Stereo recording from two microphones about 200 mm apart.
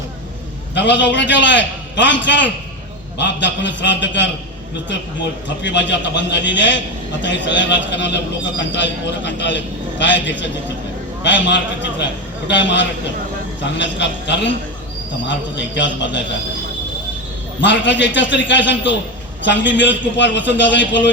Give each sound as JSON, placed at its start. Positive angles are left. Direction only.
{"t": 0.7, "sound": "a man's voice", "side_deg": 60}
{"t": 5.6, "sound": "a man's voice", "side_deg": 60}
{"t": 17.6, "sound": "a man's voice", "side_deg": 65}